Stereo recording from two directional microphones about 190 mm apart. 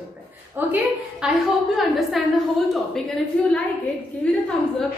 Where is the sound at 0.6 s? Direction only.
10° right (ahead or behind).